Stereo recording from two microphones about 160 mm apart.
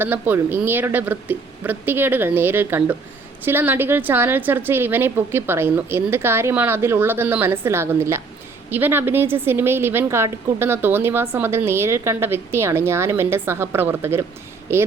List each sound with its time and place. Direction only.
0.0 s a woman's voice: 10° right (ahead or behind)